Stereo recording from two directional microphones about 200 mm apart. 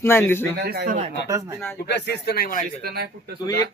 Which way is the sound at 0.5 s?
50° right (ahead or behind).